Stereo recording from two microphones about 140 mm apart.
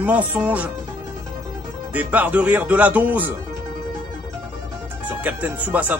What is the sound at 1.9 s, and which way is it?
Speech, 10° right (ahead or behind).